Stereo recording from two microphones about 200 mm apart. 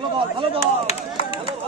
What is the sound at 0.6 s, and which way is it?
Chop, 30° left (ahead or behind).